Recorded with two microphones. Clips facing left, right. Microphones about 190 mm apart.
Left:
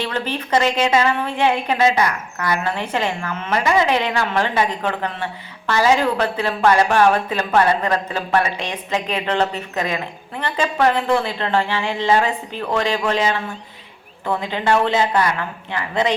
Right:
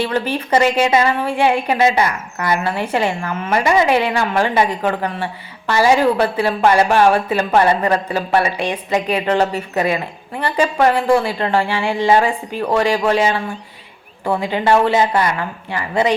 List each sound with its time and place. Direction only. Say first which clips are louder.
0.0 s a woman's voice: right 5 dB; 10° right (ahead or behind)
2.0 s a woman's voice: right 2 dB; 30° right (ahead or behind)
2.6 s a woman's voice: right 3 dB; 10° right (ahead or behind)